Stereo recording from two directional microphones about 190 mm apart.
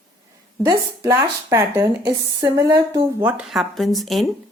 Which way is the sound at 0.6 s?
15° right (ahead or behind).